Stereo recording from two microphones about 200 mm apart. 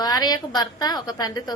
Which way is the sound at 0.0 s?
20° left (ahead or behind).